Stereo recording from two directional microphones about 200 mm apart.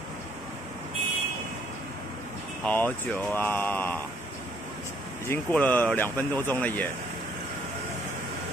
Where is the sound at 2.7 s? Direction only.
10° left (ahead or behind).